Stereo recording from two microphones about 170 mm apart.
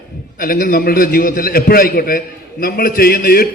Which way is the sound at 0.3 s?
60° left (ahead or behind).